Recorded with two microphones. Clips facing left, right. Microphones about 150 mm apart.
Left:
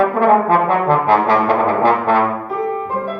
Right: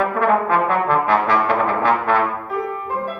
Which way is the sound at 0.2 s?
30° left (ahead or behind).